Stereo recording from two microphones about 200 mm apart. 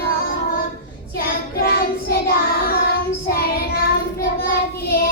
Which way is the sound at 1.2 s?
45° left (ahead or behind).